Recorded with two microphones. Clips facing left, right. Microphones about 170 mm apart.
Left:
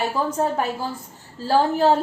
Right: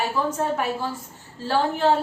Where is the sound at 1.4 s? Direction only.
35° left (ahead or behind).